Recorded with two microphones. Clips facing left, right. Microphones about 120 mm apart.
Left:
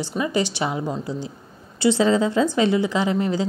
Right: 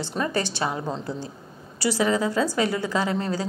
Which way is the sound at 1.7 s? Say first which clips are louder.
Left 5 dB; 25° left (ahead or behind).